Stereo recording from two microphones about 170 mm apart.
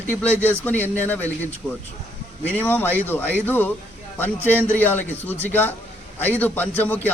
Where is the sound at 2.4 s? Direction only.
10° left (ahead or behind).